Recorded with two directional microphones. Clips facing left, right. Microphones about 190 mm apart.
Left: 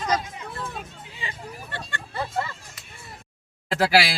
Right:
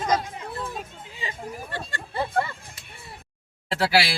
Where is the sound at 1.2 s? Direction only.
45° right (ahead or behind).